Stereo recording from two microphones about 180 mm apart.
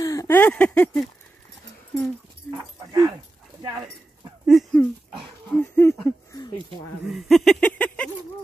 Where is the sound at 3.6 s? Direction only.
20° right (ahead or behind).